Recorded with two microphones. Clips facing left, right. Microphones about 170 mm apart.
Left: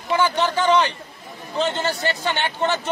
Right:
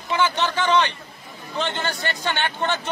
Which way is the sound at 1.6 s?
35° left (ahead or behind).